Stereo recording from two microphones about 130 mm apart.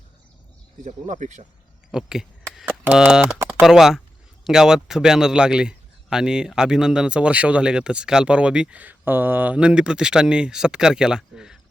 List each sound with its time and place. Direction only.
0.9 s speech: 65° right (ahead or behind)
1.9 s a sound: 5° right (ahead or behind)
2.8 s a man's voice: 10° right (ahead or behind)